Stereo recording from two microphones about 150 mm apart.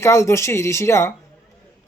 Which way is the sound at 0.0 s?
20° left (ahead or behind).